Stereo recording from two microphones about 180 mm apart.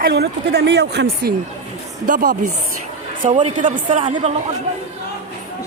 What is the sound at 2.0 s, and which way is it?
A woman's voice, 45° right (ahead or behind).